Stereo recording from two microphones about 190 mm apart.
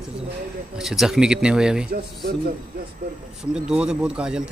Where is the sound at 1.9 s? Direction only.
55° right (ahead or behind).